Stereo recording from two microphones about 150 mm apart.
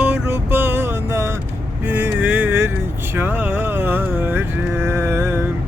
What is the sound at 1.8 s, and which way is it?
Vehicle, 15° right (ahead or behind).